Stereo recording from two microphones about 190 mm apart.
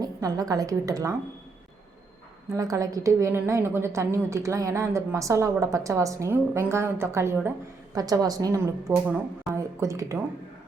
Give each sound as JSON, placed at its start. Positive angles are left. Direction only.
{"t": 0.0, "sound": "a woman's voice", "side_deg": -20}
{"t": 2.5, "sound": "a woman's voice", "side_deg": -15}